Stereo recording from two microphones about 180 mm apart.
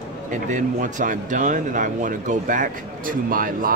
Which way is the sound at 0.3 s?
45° right (ahead or behind).